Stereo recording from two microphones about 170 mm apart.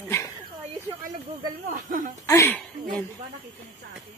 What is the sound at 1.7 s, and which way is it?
Speech, 50° right (ahead or behind).